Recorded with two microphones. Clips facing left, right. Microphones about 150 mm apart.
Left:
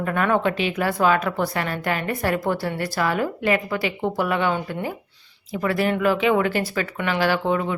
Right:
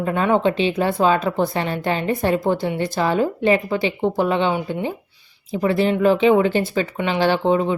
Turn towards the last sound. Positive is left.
turn(degrees=-25)  # may be behind; listen again after turning